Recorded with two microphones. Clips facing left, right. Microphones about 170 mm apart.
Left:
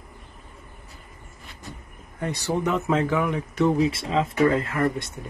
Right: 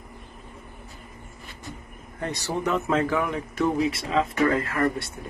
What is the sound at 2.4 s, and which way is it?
Speech, 15° left (ahead or behind).